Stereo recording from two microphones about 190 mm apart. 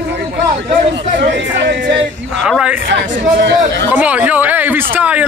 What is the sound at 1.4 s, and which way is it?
Speech, 65° right (ahead or behind).